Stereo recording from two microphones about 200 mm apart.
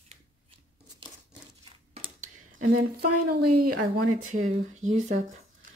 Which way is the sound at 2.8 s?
50° right (ahead or behind).